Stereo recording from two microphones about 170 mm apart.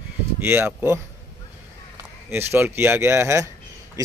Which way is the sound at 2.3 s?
15° right (ahead or behind).